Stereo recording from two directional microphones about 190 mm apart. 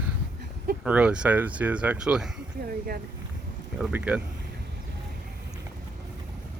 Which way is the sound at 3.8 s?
5° right (ahead or behind).